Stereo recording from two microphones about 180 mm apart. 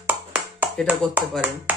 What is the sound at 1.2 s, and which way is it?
Speech, 10° right (ahead or behind).